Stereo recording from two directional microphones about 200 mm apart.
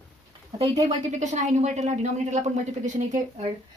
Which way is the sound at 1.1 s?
35° right (ahead or behind).